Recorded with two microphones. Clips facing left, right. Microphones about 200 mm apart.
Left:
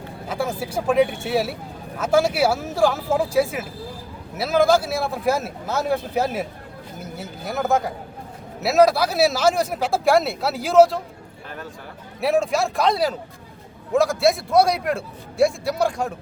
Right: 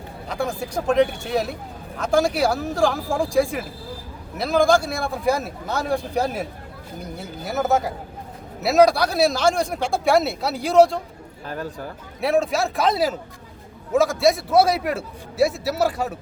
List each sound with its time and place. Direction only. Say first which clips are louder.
0.3 s speech: even; 5° left (ahead or behind)
11.4 s speech: right 6 dB; 40° right (ahead or behind)
12.2 s speech: even; centre (ahead or behind)